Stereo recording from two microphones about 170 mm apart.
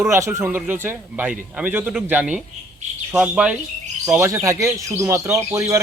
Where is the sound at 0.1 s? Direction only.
15° right (ahead or behind).